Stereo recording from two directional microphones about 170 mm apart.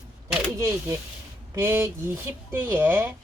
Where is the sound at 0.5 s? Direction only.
15° right (ahead or behind).